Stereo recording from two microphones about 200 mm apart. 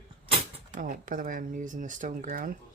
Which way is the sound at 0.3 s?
40° right (ahead or behind).